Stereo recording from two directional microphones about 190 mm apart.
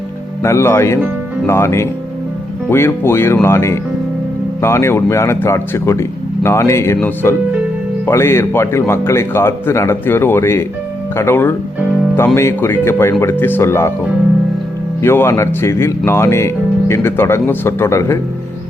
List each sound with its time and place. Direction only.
0.4 s speech: 15° left (ahead or behind)
15.0 s speech: 15° left (ahead or behind)